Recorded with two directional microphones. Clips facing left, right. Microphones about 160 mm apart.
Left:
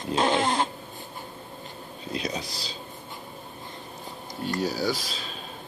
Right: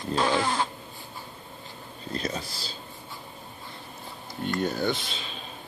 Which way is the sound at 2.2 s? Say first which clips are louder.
Even; 15° left (ahead or behind).